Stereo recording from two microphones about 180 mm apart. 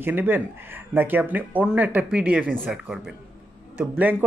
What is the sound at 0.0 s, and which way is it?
Speech, 10° right (ahead or behind).